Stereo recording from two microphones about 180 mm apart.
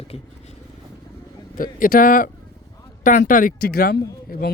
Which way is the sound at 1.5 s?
50° left (ahead or behind).